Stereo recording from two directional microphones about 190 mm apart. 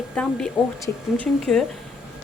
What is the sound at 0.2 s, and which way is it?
Speech, 5° left (ahead or behind).